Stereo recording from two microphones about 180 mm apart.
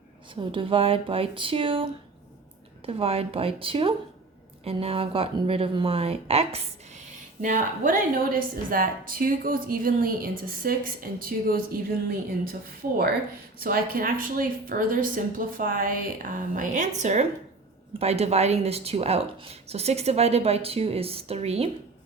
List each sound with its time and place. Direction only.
0.3 s speech: 30° right (ahead or behind)
7.4 s a woman's voice: 45° right (ahead or behind)
13.6 s speech: 55° right (ahead or behind); by 21.7 s 35° right (ahead or behind)